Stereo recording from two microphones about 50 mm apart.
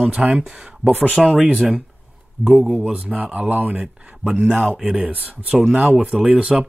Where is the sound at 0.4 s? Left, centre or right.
Centre.